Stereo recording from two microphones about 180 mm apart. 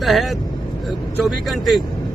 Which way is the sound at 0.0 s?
Centre (ahead or behind).